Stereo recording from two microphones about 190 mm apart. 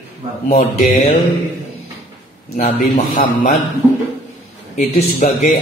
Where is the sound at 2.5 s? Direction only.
45° left (ahead or behind).